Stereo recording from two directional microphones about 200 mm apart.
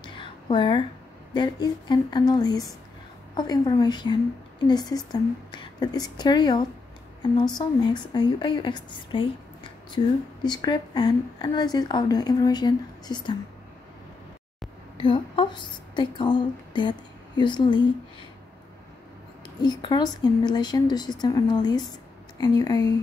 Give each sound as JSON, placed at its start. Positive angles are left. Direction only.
{"t": 0.0, "sound": "a sound", "side_deg": 25}
{"t": 1.3, "sound": "a woman's voice", "side_deg": 20}
{"t": 15.0, "sound": "a woman's voice", "side_deg": 25}
{"t": 19.6, "sound": "a woman's voice", "side_deg": 20}